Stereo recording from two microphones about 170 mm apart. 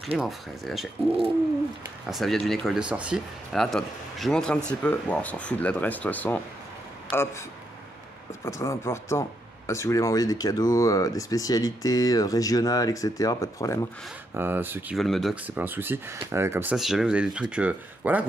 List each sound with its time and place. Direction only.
0.2 s speech: centre (ahead or behind)
2.0 s speech: centre (ahead or behind)
8.5 s speech: 15° left (ahead or behind)
14.3 s speech: 10° right (ahead or behind)
15.0 s speech: centre (ahead or behind)
16.7 s speech: centre (ahead or behind)